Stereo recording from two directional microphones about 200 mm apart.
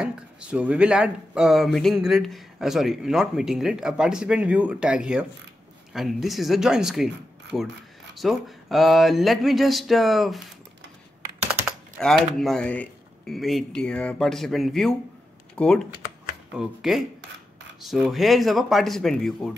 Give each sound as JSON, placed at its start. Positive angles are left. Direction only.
{"t": 0.0, "sound": "speech", "side_deg": -5}
{"t": 8.1, "sound": "speech", "side_deg": 0}
{"t": 12.0, "sound": "speech", "side_deg": 0}